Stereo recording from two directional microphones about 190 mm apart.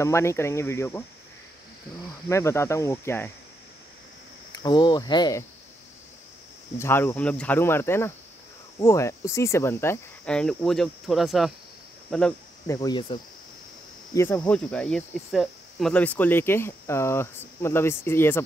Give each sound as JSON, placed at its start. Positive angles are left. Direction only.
{"t": 0.0, "sound": "speech", "side_deg": 15}
{"t": 2.2, "sound": "speech", "side_deg": 15}
{"t": 4.6, "sound": "speech", "side_deg": 25}
{"t": 6.8, "sound": "speech", "side_deg": 15}
{"t": 12.1, "sound": "cricket", "side_deg": 5}
{"t": 12.6, "sound": "speech", "side_deg": 20}